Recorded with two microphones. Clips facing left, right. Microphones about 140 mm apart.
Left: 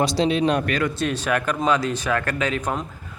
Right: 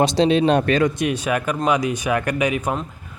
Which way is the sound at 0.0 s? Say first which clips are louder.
Right 4 dB; 20° right (ahead or behind).